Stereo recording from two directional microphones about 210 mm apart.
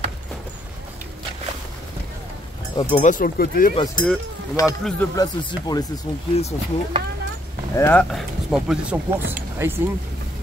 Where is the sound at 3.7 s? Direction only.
20° left (ahead or behind).